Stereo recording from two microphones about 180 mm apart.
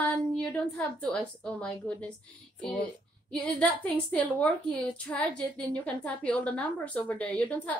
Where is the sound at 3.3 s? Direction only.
5° left (ahead or behind).